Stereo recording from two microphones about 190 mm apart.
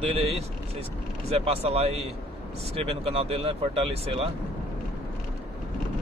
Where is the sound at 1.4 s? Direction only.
30° right (ahead or behind).